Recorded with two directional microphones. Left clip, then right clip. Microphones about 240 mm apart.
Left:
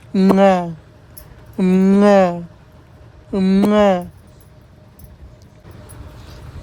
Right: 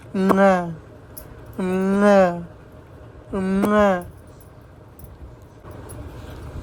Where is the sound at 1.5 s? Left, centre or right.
Left.